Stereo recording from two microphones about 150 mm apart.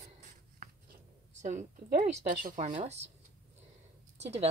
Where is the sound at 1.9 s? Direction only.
70° right (ahead or behind); by 3.1 s 50° right (ahead or behind).